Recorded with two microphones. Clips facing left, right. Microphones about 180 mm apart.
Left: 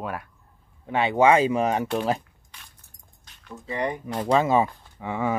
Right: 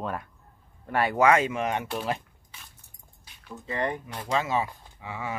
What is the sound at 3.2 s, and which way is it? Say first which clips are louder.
Squish: left 1 dB; 5° right (ahead or behind).